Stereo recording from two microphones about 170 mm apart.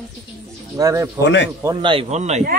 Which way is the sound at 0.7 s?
20° right (ahead or behind).